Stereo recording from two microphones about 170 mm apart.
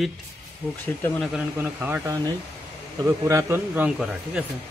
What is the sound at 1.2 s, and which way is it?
Speech, 5° right (ahead or behind).